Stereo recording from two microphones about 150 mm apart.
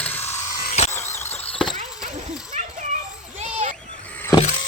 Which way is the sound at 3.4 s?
50° right (ahead or behind).